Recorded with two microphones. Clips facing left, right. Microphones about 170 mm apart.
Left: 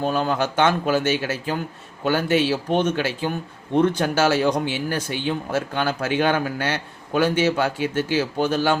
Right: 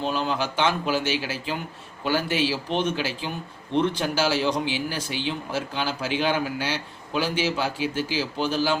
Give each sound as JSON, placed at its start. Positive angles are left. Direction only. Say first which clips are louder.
{"t": 0.0, "sound": "speech", "louder": "left 4 dB", "side_deg": 50}